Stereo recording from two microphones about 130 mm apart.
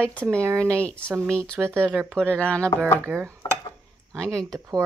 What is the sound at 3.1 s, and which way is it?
Speech, 20° right (ahead or behind).